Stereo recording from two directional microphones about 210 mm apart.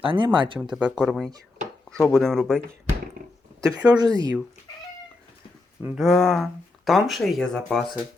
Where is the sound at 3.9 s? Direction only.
20° right (ahead or behind).